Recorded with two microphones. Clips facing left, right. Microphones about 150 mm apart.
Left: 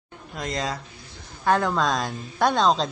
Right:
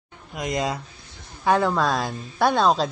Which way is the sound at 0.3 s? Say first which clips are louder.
Right 3 dB; 15° right (ahead or behind).